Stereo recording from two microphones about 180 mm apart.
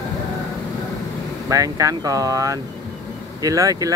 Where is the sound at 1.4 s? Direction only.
20° right (ahead or behind).